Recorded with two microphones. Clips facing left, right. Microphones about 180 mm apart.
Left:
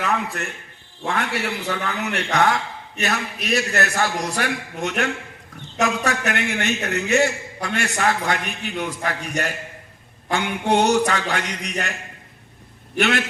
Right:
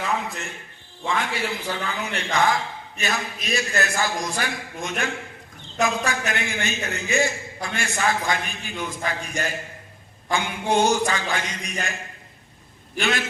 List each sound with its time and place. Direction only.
0.0 s a man's voice: 65° left (ahead or behind)
13.0 s a man's voice: 65° left (ahead or behind)